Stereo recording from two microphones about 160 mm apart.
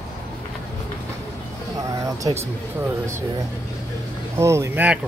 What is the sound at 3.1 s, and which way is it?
Speech, 15° right (ahead or behind).